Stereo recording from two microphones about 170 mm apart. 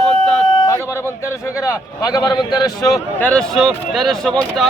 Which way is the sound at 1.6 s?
20° left (ahead or behind).